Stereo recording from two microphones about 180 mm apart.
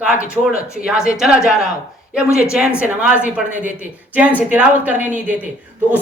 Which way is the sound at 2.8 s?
5° right (ahead or behind).